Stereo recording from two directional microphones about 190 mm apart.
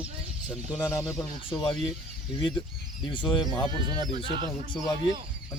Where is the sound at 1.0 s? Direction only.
20° left (ahead or behind).